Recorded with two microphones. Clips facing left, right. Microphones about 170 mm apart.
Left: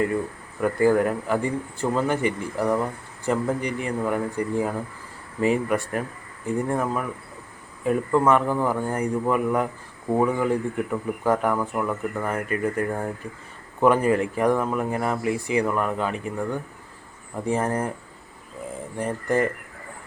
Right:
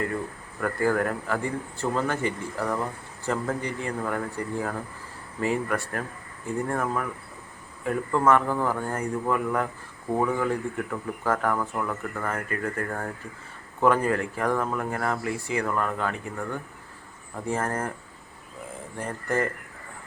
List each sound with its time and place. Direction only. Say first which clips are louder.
0.6 s speech: left 5 dB; 20° left (ahead or behind)
18.9 s speech: left 4 dB; 15° left (ahead or behind)